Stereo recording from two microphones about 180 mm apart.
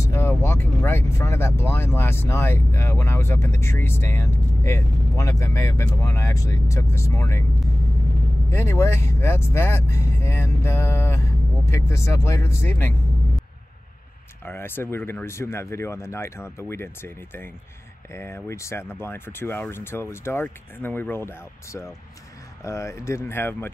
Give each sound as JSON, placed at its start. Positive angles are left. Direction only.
{"t": 0.0, "sound": "speech", "side_deg": 15}
{"t": 8.5, "sound": "speech", "side_deg": 15}
{"t": 14.4, "sound": "speech", "side_deg": 10}